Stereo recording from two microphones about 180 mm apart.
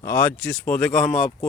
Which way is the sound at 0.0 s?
10° left (ahead or behind).